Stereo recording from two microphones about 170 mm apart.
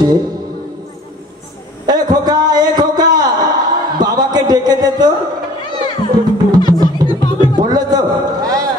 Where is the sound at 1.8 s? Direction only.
25° right (ahead or behind).